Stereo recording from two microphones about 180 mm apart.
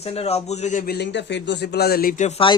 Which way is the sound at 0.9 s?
70° left (ahead or behind).